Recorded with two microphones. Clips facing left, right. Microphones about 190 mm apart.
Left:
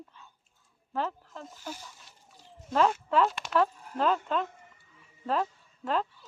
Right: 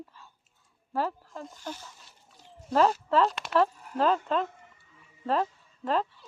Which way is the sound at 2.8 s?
35° right (ahead or behind).